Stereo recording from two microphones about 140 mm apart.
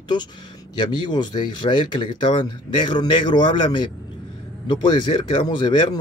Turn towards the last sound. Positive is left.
turn(degrees=30)  # may be behind; listen again after turning